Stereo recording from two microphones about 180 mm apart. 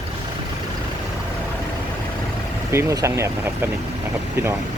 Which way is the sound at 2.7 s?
15° right (ahead or behind).